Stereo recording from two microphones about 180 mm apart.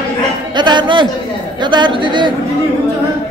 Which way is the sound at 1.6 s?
25° right (ahead or behind).